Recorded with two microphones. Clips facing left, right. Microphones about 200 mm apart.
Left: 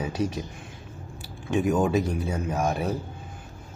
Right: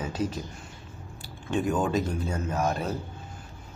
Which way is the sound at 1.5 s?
10° left (ahead or behind).